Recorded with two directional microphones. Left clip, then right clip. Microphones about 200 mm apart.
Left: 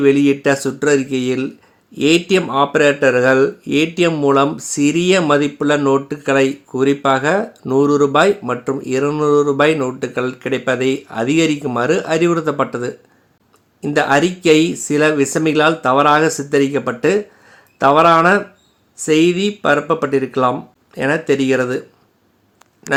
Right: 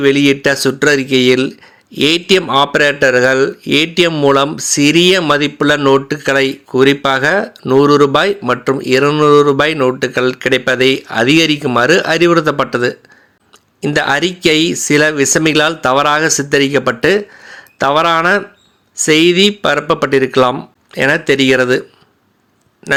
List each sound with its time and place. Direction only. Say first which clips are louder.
0.0 s speech: right 2 dB; 20° right (ahead or behind)